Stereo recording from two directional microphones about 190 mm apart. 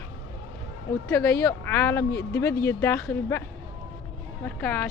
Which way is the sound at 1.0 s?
15° left (ahead or behind).